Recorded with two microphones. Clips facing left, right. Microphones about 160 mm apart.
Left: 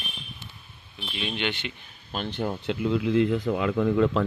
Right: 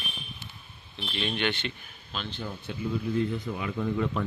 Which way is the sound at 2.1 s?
55° left (ahead or behind).